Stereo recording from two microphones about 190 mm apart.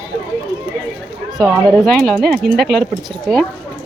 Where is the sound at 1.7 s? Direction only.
5° left (ahead or behind).